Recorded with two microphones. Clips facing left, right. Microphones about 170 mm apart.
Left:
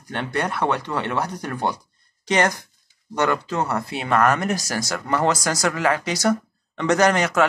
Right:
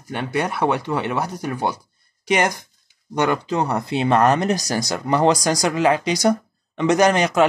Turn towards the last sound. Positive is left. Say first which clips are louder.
# right 2 dB
turn(degrees=-15)  # may be behind; listen again after turning